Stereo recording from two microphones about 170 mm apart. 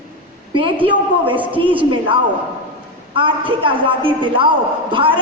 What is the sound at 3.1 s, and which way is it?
A woman's voice, 30° right (ahead or behind).